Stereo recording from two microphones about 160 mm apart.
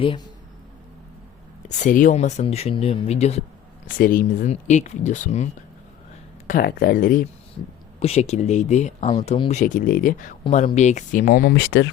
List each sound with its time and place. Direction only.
1.6 s speech: 50° left (ahead or behind)
3.9 s speech: 60° left (ahead or behind); by 5.5 s 45° left (ahead or behind)
6.5 s speech: 65° left (ahead or behind)
7.9 s speech: 40° left (ahead or behind); by 10.3 s 55° left (ahead or behind)
10.5 s speech: 45° left (ahead or behind); by 11.8 s 75° left (ahead or behind)